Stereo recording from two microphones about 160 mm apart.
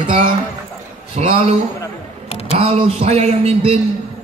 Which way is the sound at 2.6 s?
40° right (ahead or behind).